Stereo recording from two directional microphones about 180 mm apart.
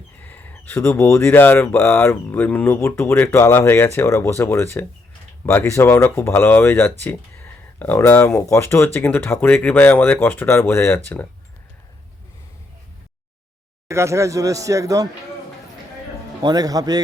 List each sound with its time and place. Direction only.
0.2 s speech: 10° left (ahead or behind)
13.8 s speech: 15° right (ahead or behind)
16.4 s a man's voice: 20° right (ahead or behind)